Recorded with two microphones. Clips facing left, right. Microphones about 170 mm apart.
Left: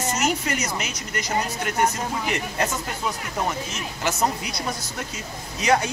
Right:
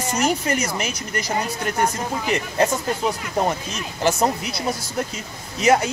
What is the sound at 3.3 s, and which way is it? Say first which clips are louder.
Speech: right 4 dB; 30° right (ahead or behind).